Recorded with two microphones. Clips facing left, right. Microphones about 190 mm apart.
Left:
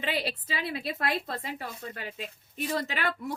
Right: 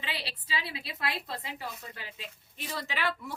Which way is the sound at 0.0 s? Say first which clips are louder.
Left 8 dB; 50° left (ahead or behind).